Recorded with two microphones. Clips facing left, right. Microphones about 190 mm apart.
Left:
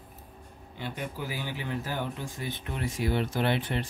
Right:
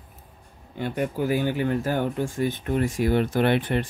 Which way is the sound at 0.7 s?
50° right (ahead or behind).